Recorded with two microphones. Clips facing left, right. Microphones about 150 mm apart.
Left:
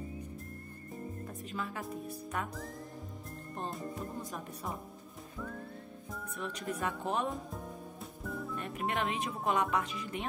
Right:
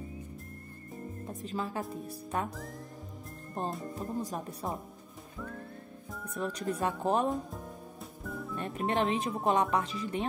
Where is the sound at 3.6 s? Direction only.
Centre (ahead or behind).